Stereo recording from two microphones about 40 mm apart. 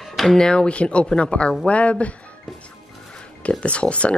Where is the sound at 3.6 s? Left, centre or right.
Left.